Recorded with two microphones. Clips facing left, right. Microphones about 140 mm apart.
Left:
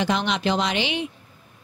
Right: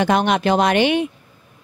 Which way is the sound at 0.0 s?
55° right (ahead or behind).